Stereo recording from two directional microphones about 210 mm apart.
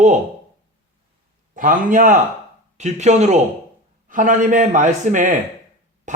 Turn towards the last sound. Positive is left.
turn(degrees=-35)  # may be behind; listen again after turning